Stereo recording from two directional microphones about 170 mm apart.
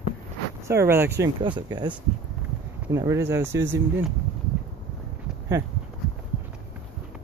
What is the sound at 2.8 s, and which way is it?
Speech, 15° right (ahead or behind).